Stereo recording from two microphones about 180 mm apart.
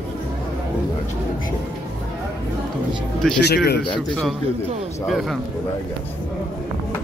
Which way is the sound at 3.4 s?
60° left (ahead or behind).